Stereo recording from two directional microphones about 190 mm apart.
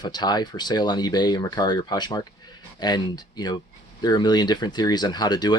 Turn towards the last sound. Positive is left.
turn(degrees=20)  # may be behind; listen again after turning